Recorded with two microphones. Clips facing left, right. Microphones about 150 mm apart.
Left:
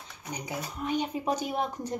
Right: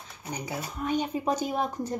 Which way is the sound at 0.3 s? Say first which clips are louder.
Right 1 dB; 15° left (ahead or behind).